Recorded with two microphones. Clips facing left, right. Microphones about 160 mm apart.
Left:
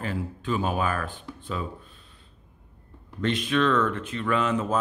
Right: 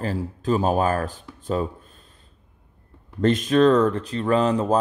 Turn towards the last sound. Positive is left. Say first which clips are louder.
# right 5 dB
turn(degrees=-35)  # may be behind; listen again after turning